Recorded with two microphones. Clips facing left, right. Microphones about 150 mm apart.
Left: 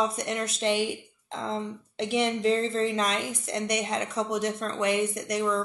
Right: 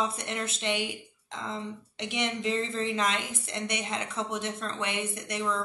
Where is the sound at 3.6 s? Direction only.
25° right (ahead or behind).